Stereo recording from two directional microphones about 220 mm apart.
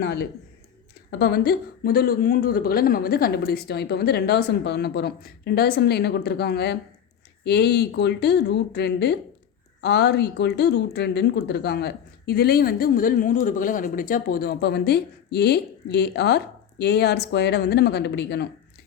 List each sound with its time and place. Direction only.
0.0 s a woman's voice: 50° left (ahead or behind)